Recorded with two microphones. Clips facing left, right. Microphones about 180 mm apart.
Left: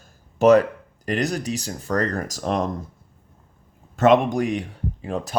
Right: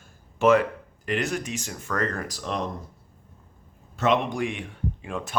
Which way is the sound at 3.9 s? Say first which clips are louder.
Left 7 dB; 50° left (ahead or behind).